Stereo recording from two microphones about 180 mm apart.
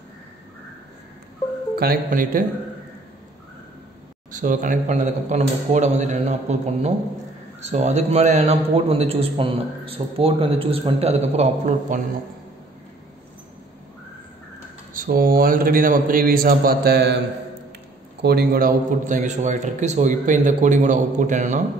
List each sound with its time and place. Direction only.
1.8 s a man's voice: 55° right (ahead or behind)
4.4 s a man's voice: 45° right (ahead or behind)
15.0 s a man's voice: 55° right (ahead or behind)
18.2 s a man's voice: 60° right (ahead or behind); by 21.6 s 40° right (ahead or behind)